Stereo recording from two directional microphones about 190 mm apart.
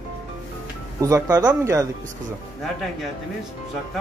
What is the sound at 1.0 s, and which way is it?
Speech, 15° right (ahead or behind).